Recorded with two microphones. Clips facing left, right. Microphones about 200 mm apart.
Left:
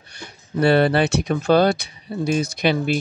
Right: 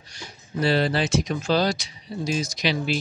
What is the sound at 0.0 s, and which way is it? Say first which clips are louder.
Speech: left 2 dB; 60° left (ahead or behind).